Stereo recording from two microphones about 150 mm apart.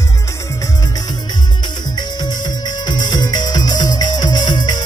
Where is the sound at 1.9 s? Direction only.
30° left (ahead or behind).